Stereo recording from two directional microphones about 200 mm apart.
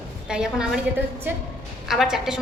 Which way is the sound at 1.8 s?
Centre (ahead or behind).